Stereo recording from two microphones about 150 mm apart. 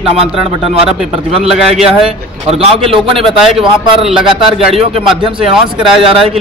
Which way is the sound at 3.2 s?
5° right (ahead or behind).